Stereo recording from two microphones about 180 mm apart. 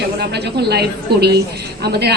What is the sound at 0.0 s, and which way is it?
A woman's voice, 65° right (ahead or behind).